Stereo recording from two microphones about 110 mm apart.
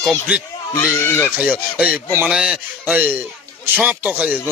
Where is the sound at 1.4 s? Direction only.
10° right (ahead or behind).